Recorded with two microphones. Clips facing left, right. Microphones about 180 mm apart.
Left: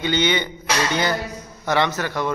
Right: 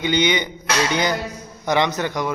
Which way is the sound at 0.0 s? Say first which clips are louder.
Right 1 dB; 15° right (ahead or behind).